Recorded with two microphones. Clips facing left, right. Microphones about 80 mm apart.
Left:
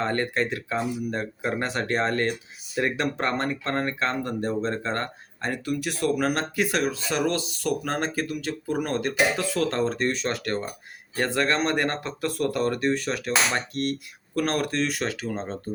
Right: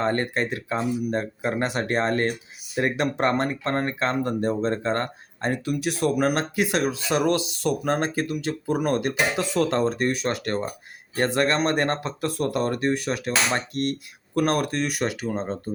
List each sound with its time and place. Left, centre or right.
0.0 s speech: centre
14.3 s speech: centre